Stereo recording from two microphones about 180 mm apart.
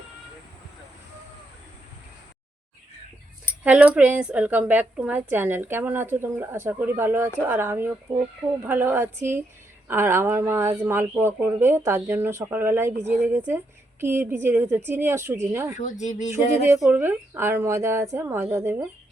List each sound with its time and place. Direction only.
3.6 s speech: 10° right (ahead or behind)
16.0 s speech: 40° left (ahead or behind)
16.8 s speech: 10° right (ahead or behind)